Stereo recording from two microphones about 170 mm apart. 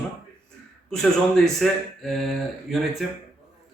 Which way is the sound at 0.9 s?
Centre (ahead or behind).